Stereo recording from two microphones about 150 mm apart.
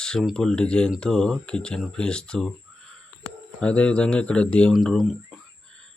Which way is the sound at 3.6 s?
10° left (ahead or behind).